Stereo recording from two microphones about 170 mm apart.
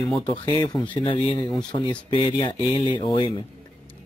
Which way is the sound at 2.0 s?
25° left (ahead or behind).